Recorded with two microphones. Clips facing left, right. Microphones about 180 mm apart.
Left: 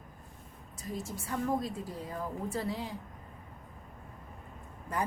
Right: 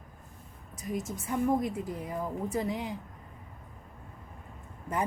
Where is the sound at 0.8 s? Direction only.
20° right (ahead or behind).